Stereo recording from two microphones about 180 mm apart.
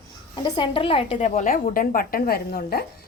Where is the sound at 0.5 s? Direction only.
25° left (ahead or behind).